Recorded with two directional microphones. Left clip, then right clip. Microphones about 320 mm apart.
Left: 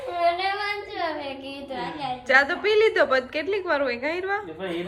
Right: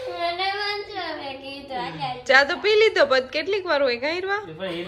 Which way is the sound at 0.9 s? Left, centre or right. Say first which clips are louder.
Left 2 dB; centre.